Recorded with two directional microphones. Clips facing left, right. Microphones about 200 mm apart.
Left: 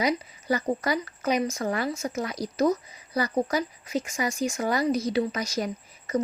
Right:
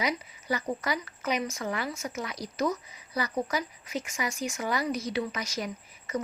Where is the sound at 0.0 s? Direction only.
40° left (ahead or behind).